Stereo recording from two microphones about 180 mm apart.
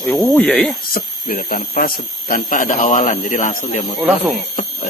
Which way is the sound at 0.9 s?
55° left (ahead or behind).